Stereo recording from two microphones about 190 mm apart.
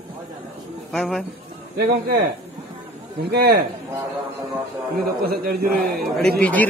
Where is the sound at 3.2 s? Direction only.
55° right (ahead or behind).